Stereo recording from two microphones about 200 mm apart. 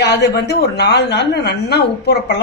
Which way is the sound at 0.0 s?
55° left (ahead or behind).